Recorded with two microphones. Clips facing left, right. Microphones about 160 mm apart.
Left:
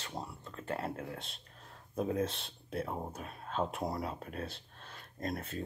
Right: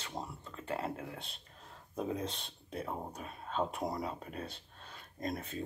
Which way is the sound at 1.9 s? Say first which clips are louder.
Left 4 dB; 5° left (ahead or behind).